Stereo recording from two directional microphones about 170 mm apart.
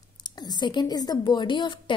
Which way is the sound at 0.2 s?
25° left (ahead or behind).